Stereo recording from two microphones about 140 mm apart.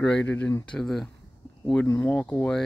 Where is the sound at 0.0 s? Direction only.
10° left (ahead or behind).